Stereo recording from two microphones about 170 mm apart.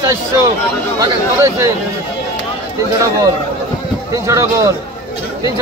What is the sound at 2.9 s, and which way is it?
Speech, 20° right (ahead or behind).